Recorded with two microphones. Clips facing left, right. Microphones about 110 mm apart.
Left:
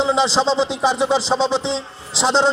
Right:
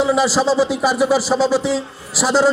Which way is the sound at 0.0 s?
25° left (ahead or behind).